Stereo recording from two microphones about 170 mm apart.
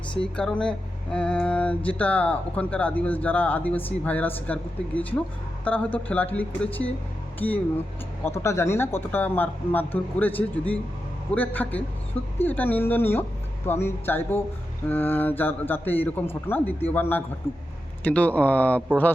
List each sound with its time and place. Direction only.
0.2 s speech: 5° left (ahead or behind)